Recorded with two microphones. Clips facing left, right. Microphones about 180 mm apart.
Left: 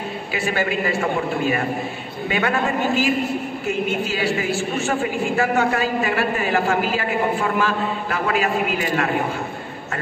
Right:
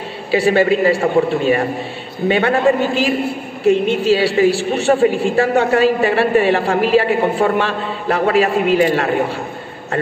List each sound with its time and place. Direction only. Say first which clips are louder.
0.3 s a woman's voice: right 11 dB; 30° right (ahead or behind)